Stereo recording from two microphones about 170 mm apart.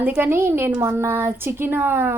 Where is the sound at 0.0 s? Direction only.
10° right (ahead or behind).